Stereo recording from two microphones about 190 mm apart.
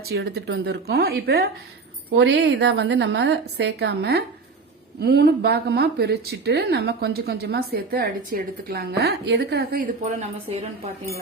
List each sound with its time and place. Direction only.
0.1 s a woman's voice: 60° right (ahead or behind)
2.1 s a woman's voice: 70° right (ahead or behind); by 10.6 s 40° right (ahead or behind)